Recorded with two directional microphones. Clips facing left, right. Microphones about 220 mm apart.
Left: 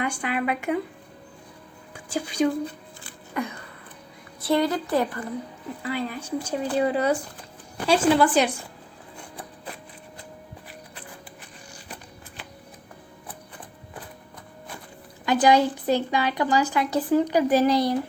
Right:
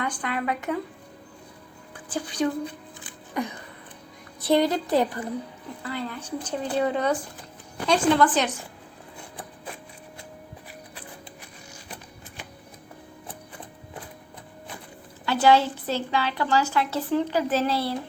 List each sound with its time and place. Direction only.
0.2 s a woman's voice: 10° left (ahead or behind)
2.0 s a woman's voice: 10° left (ahead or behind)
3.0 s a sound: 15° right (ahead or behind)
4.4 s a woman's voice: 20° right (ahead or behind)
5.8 s a woman's voice: 10° left (ahead or behind)
15.3 s a woman's voice: 15° left (ahead or behind)